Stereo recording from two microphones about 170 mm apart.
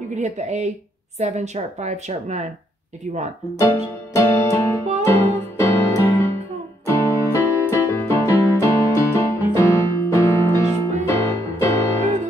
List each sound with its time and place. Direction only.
0.1 s a woman's voice: 45° right (ahead or behind)
3.5 s music: 15° left (ahead or behind)
6.9 s keyboard: 15° left (ahead or behind)
9.9 s music: 15° left (ahead or behind)